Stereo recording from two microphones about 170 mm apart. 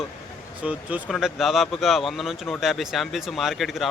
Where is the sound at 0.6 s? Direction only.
10° right (ahead or behind).